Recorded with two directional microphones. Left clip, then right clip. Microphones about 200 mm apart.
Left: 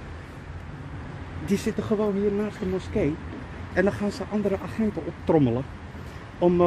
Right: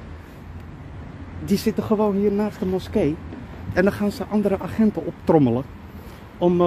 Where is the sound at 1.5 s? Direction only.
30° right (ahead or behind).